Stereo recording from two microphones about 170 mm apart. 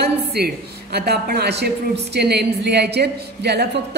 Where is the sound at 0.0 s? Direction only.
70° right (ahead or behind).